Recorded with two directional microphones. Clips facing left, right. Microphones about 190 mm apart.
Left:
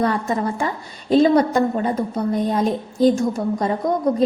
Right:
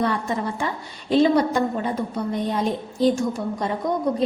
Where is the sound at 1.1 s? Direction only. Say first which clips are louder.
Left 3 dB; 40° left (ahead or behind).